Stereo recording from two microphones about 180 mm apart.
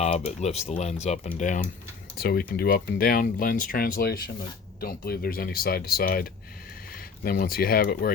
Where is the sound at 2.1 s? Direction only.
60° left (ahead or behind).